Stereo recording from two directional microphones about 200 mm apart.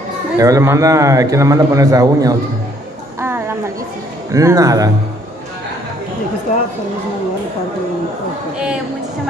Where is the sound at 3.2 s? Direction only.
10° right (ahead or behind).